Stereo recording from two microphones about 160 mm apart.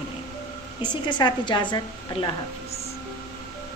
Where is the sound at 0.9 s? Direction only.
30° left (ahead or behind).